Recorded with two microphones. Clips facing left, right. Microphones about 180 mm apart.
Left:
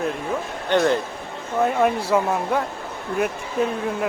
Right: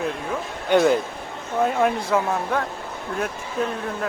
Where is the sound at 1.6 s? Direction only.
5° left (ahead or behind).